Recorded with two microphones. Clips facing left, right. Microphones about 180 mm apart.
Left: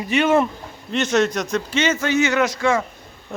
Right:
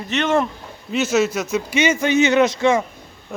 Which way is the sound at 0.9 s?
5° right (ahead or behind).